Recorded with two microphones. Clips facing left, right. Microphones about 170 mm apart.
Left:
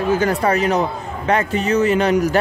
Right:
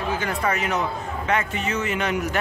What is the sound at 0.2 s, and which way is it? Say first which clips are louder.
Speech: left 8 dB; 35° left (ahead or behind).